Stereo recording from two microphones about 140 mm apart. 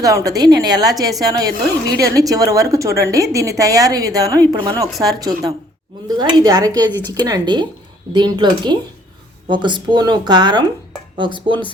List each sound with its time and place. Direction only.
0.0 s speech: 25° right (ahead or behind)